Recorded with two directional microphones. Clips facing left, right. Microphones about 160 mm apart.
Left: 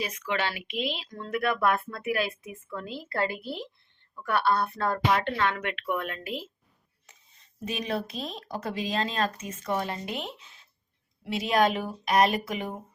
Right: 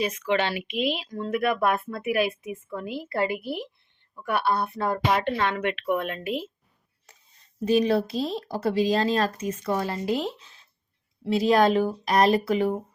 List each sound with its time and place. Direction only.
0.0 s a woman's voice: 20° right (ahead or behind)
7.6 s speech: 35° right (ahead or behind)